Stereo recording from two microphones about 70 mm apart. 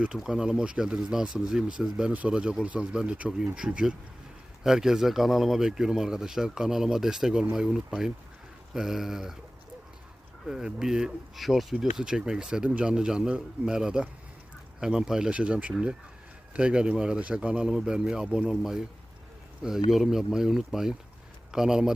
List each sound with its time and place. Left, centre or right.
0.2 s speech: centre
10.4 s speech: centre
19.9 s speech: centre